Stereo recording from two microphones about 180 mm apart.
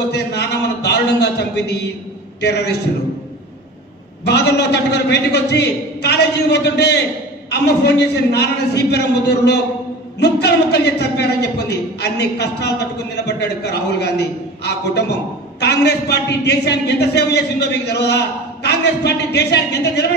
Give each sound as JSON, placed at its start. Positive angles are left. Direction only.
{"t": 0.1, "sound": "a sound", "side_deg": 65}
{"t": 2.4, "sound": "a man's voice", "side_deg": 65}
{"t": 4.2, "sound": "a man's voice", "side_deg": 65}